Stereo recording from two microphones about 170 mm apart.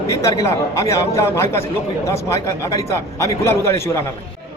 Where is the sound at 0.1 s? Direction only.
20° left (ahead or behind).